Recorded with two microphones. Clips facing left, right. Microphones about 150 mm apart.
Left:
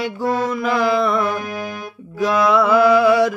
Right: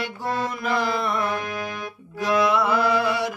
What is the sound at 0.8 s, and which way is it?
Music, 90° left.